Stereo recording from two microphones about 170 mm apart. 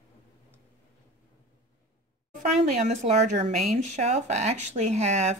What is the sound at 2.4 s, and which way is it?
Speech, 40° right (ahead or behind).